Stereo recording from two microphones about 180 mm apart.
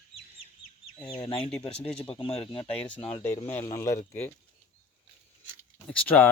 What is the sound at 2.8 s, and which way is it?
Speech, 10° left (ahead or behind).